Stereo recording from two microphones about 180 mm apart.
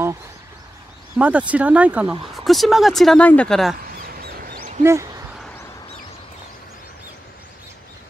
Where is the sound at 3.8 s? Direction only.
55° right (ahead or behind).